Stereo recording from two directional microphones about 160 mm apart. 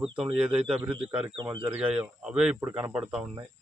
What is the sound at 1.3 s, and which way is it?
Speech, 30° right (ahead or behind).